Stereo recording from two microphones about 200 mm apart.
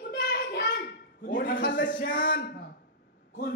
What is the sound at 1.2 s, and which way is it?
A man's voice, 45° left (ahead or behind).